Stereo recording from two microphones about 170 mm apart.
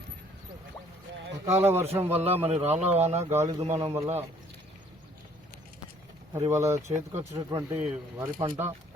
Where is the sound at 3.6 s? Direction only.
40° right (ahead or behind).